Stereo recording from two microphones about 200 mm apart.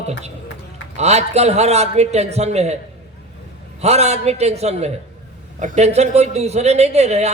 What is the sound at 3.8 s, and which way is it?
A man's voice, 30° right (ahead or behind).